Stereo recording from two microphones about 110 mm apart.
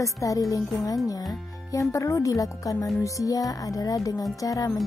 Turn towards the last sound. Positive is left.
turn(degrees=30)  # may be behind; listen again after turning